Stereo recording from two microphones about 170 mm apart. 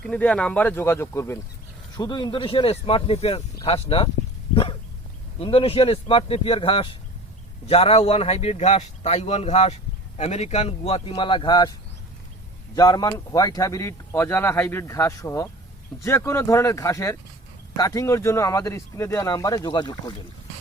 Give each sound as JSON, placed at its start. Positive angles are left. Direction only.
{"t": 0.0, "sound": "a man's voice", "side_deg": 5}
{"t": 12.7, "sound": "speech", "side_deg": 20}